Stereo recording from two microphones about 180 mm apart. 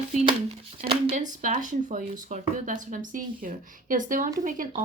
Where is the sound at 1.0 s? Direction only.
45° right (ahead or behind).